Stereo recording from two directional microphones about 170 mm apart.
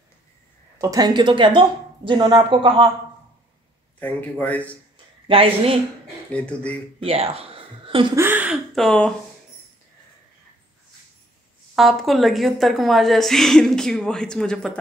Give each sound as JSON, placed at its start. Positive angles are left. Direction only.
{"t": 0.7, "sound": "speech", "side_deg": -20}
{"t": 4.0, "sound": "a man's voice", "side_deg": 10}
{"t": 4.9, "sound": "a sound", "side_deg": -35}
{"t": 6.3, "sound": "a man's voice", "side_deg": 5}
{"t": 7.0, "sound": "speech", "side_deg": -35}
{"t": 8.2, "sound": "speech", "side_deg": -10}
{"t": 8.7, "sound": "a woman's voice", "side_deg": 5}
{"t": 11.7, "sound": "a woman's voice", "side_deg": 0}